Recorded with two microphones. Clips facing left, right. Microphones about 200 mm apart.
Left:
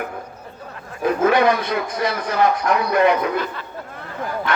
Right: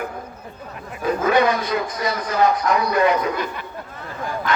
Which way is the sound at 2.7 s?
55° left (ahead or behind).